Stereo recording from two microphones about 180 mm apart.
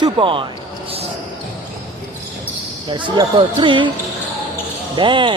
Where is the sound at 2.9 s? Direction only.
25° right (ahead or behind).